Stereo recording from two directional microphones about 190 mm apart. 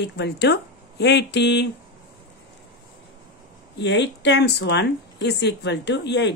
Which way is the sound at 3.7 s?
65° left (ahead or behind).